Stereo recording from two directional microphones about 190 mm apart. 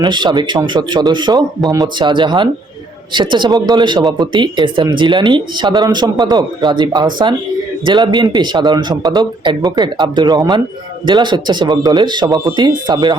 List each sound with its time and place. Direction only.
0.0 s speech: 25° right (ahead or behind)